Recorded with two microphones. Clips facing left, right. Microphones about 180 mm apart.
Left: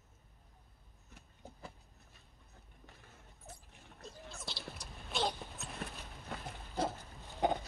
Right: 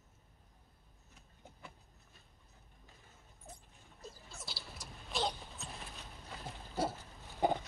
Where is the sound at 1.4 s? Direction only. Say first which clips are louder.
Left 5 dB; 35° left (ahead or behind).